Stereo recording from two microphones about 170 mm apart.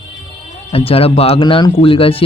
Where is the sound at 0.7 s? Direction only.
35° left (ahead or behind).